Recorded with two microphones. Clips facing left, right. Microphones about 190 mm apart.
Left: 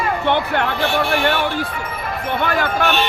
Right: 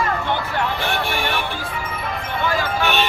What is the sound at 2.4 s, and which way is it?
Speech, 60° left (ahead or behind).